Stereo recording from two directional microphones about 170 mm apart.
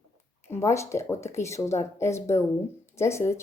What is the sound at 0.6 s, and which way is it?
Speech, 15° left (ahead or behind).